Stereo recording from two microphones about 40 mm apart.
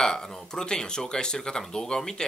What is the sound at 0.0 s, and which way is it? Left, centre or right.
Speech, centre.